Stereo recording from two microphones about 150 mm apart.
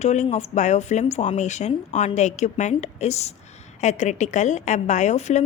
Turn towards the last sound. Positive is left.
turn(degrees=50)  # may be behind; listen again after turning